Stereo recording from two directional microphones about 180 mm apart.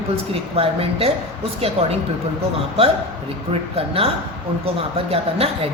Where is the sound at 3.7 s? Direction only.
30° right (ahead or behind).